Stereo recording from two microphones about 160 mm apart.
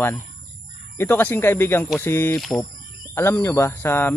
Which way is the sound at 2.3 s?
Centre (ahead or behind).